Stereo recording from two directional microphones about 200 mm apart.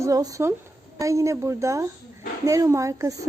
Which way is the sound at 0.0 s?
15° right (ahead or behind).